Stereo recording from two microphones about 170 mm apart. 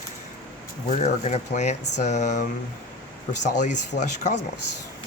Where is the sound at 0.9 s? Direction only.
40° left (ahead or behind).